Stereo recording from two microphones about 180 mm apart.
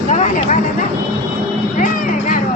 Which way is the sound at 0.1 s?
40° left (ahead or behind).